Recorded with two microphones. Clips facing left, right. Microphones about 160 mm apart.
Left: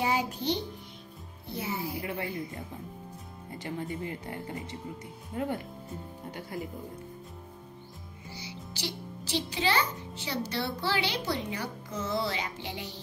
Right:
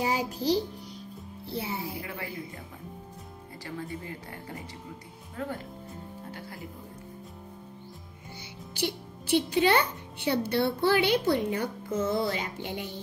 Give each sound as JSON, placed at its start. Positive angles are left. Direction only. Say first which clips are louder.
{"t": 0.0, "sound": "a child's voice", "louder": "right 1 dB", "side_deg": -35}
{"t": 2.0, "sound": "speech", "louder": "left 3 dB", "side_deg": 25}
{"t": 3.6, "sound": "speech", "louder": "left 2 dB", "side_deg": 20}
{"t": 8.3, "sound": "a child's voice", "louder": "left 1 dB", "side_deg": -55}